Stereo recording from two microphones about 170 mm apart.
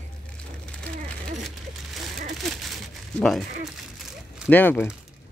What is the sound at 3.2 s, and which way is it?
Speech, centre (ahead or behind).